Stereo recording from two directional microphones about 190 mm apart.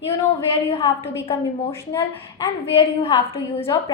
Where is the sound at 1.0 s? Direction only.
15° left (ahead or behind).